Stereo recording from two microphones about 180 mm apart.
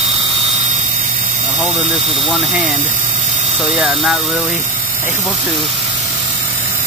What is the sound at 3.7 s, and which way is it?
Speech, 5° right (ahead or behind).